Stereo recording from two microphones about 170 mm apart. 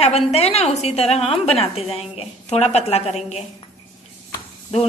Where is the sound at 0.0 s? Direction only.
40° left (ahead or behind).